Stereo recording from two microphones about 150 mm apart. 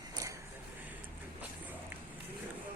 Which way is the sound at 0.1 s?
20° right (ahead or behind).